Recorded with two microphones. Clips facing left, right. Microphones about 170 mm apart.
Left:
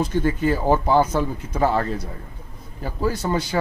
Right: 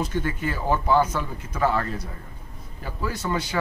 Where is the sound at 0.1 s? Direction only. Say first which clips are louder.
Left 7 dB; 35° left (ahead or behind).